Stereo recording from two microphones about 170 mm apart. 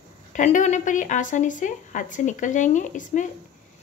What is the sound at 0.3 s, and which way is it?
A woman's voice, 45° left (ahead or behind).